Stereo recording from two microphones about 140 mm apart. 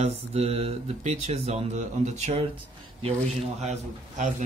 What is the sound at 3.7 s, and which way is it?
Speech, 65° right (ahead or behind).